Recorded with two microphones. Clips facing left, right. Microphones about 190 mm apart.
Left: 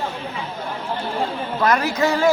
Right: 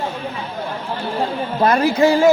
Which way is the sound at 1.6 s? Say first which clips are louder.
Right 5 dB; 30° right (ahead or behind).